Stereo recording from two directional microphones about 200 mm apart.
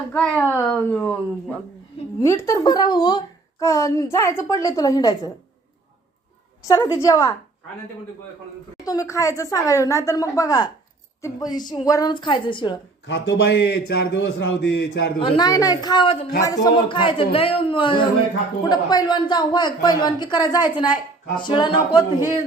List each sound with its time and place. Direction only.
0.1 s a woman's voice: 5° left (ahead or behind)
6.7 s a woman's voice: 15° left (ahead or behind)
8.8 s a woman's voice: 15° left (ahead or behind)
13.1 s a man's voice: 60° left (ahead or behind)
15.2 s a woman's voice: 20° left (ahead or behind)